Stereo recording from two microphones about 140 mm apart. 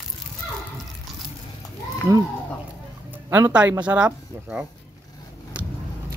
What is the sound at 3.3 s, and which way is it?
Speech, 10° right (ahead or behind).